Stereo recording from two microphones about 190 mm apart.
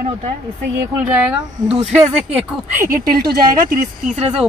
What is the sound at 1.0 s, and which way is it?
Speech, 5° right (ahead or behind).